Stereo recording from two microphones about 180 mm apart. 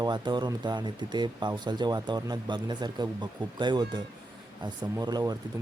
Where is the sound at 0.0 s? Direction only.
25° right (ahead or behind).